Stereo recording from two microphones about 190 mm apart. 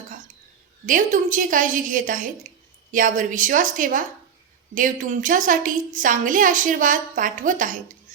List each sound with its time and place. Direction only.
0.9 s a woman's voice: 45° right (ahead or behind)